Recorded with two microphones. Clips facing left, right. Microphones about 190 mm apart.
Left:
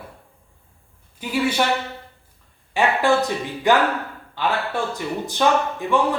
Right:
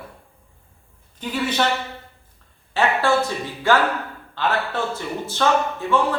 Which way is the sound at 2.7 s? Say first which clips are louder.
Left 1 dB; 15° left (ahead or behind).